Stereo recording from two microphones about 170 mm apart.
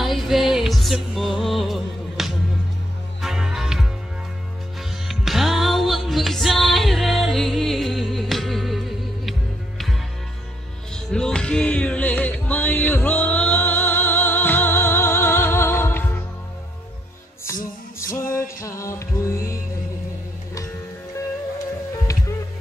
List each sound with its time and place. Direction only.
0.0 s music: centre (ahead or behind)
5.0 s music: centre (ahead or behind)
11.1 s music: 5° left (ahead or behind)
18.0 s music: 15° left (ahead or behind)
22.1 s music: 20° left (ahead or behind)